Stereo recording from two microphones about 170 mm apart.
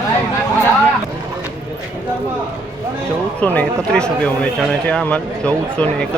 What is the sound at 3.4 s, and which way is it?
Speech, 10° left (ahead or behind).